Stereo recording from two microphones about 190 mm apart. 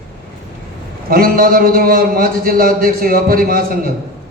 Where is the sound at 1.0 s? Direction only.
50° right (ahead or behind).